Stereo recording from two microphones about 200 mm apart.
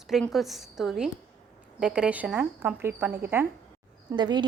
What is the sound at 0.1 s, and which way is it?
A woman's voice, centre (ahead or behind).